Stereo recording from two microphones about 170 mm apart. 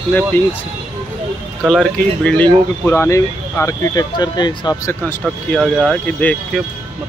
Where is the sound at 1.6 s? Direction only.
Centre (ahead or behind).